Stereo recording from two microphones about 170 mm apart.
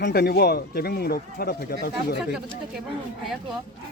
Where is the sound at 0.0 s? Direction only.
65° left (ahead or behind).